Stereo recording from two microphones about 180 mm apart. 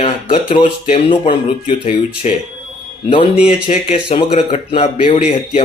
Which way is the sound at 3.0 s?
35° left (ahead or behind).